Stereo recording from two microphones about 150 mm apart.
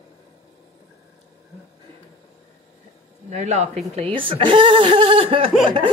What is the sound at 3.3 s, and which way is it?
Speech, 50° right (ahead or behind).